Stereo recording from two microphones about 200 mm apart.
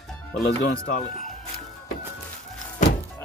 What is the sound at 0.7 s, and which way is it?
Speech, 45° left (ahead or behind).